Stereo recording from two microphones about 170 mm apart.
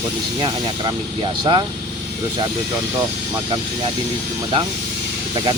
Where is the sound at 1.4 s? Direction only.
25° right (ahead or behind).